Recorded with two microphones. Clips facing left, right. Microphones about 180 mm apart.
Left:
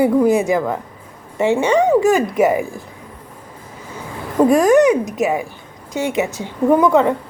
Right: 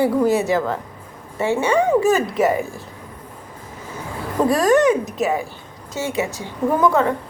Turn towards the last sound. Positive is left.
turn(degrees=15)  # may be behind; listen again after turning